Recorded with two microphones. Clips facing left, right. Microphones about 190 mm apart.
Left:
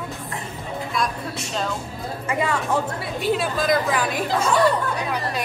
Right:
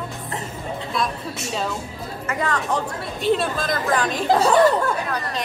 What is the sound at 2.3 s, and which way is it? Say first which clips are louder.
A woman's voice: left 1 dB; 10° left (ahead or behind).